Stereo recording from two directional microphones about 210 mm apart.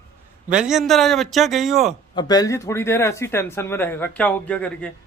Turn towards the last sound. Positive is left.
turn(degrees=5)  # may be behind; listen again after turning